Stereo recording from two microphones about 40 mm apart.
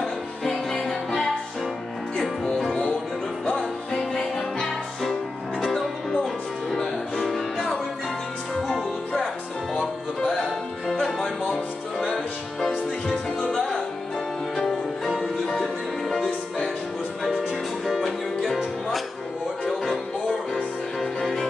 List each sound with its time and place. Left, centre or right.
0.0 s music: centre
2.5 s music: centre
3.9 s music: centre
9.8 s music: left
10.9 s music: centre
13.5 s music: centre
17.8 s music: centre
21.0 s music: centre